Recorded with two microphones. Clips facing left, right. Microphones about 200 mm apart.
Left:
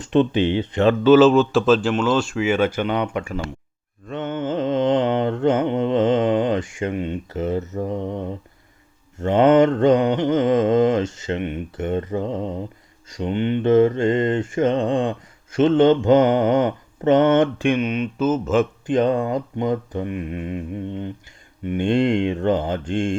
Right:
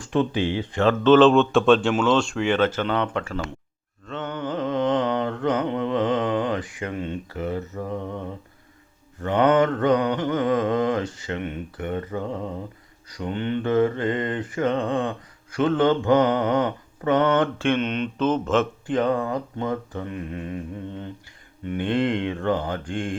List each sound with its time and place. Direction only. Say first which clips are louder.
0.0 s mantra: left 5 dB; 25° left (ahead or behind)
1.0 s speech: left 2 dB; 5° left (ahead or behind)
4.0 s mantra: left 4 dB; 20° left (ahead or behind)
9.2 s mantra: left 4 dB; 25° left (ahead or behind); by 18.6 s 5° left (ahead or behind)
18.9 s mantra: left 4 dB; 20° left (ahead or behind)